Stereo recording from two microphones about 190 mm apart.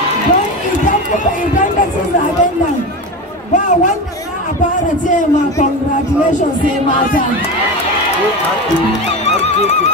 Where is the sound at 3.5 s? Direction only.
40° left (ahead or behind).